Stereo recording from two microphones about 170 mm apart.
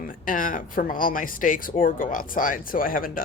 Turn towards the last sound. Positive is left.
turn(degrees=55)  # may be behind; listen again after turning